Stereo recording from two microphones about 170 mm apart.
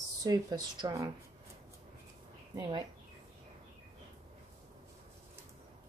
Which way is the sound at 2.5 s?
20° right (ahead or behind).